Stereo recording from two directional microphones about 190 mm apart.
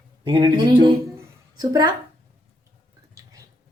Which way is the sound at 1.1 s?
20° right (ahead or behind).